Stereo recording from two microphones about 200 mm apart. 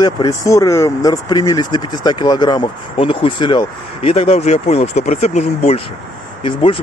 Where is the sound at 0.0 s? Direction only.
15° left (ahead or behind).